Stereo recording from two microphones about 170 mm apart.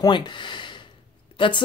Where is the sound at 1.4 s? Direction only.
30° left (ahead or behind).